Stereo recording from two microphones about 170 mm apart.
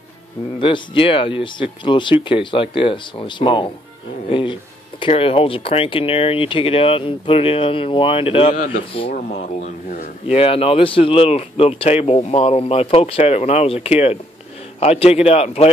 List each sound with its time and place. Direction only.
0.6 s speech: 30° left (ahead or behind)
9.1 s speech: 45° left (ahead or behind)
10.3 s speech: 35° left (ahead or behind)